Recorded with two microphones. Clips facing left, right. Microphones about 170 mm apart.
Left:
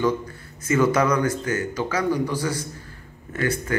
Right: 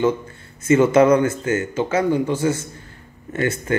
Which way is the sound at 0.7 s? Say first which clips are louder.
Right 6 dB; 25° right (ahead or behind).